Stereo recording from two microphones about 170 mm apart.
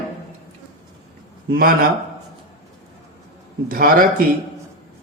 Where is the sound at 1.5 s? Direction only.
60° right (ahead or behind).